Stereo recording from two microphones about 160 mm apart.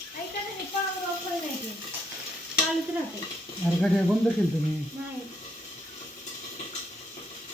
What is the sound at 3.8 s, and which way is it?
Speech, 5° left (ahead or behind).